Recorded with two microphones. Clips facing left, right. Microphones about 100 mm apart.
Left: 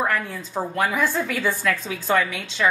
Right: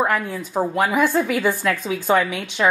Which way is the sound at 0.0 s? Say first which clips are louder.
Right 3 dB; 15° right (ahead or behind).